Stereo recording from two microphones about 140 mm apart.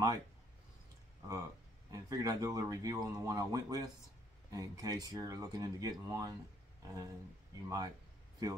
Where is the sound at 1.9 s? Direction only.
25° right (ahead or behind).